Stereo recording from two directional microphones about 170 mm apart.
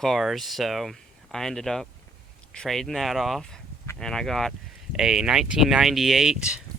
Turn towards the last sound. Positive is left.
turn(degrees=-5)  # may be behind; listen again after turning